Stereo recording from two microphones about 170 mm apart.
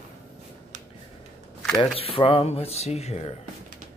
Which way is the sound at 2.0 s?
35° left (ahead or behind).